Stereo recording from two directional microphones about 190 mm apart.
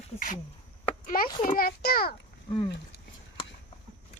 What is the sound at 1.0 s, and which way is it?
Speech, 50° left (ahead or behind).